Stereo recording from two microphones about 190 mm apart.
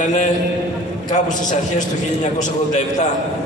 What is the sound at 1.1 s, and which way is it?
A man's voice, 40° left (ahead or behind).